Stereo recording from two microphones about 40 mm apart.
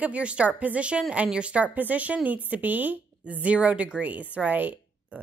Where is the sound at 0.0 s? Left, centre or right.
Right.